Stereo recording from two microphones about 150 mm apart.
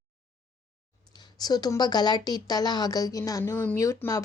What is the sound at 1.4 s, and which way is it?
Speech, 25° left (ahead or behind).